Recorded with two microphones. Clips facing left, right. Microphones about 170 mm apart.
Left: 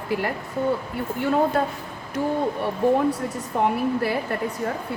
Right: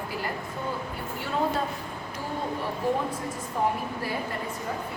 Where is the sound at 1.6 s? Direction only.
60° left (ahead or behind).